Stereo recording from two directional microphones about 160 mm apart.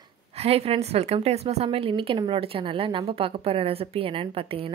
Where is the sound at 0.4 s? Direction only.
40° right (ahead or behind).